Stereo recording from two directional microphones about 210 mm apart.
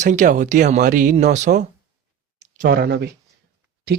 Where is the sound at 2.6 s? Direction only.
50° right (ahead or behind).